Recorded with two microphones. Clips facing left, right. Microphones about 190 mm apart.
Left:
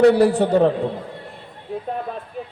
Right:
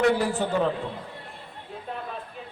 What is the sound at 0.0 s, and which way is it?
Speech, 40° left (ahead or behind).